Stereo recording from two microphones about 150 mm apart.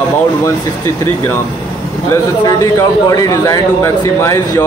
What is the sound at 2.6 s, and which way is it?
Speech, 20° left (ahead or behind).